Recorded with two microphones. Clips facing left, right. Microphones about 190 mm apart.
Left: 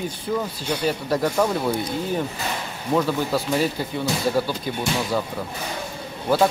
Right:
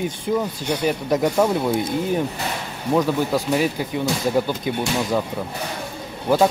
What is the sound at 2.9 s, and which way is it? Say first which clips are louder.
Speech: right 2 dB; 10° right (ahead or behind).